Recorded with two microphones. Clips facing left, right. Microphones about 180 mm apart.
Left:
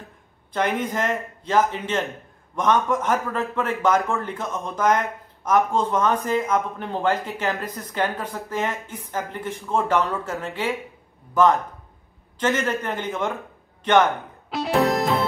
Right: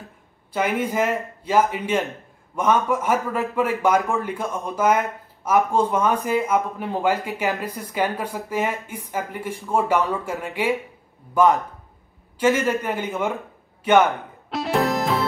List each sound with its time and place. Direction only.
0.5 s a man's voice: 10° right (ahead or behind)
14.1 s music: centre (ahead or behind)